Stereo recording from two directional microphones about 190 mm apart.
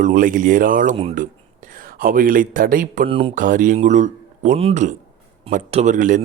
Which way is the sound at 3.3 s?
45° right (ahead or behind).